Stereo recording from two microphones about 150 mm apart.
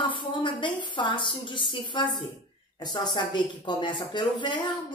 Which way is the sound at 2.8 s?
30° left (ahead or behind).